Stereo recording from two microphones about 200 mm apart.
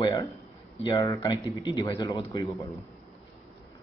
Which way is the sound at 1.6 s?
15° left (ahead or behind).